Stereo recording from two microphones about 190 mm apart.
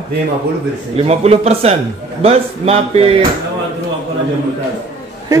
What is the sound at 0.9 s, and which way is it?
Speech, 30° right (ahead or behind).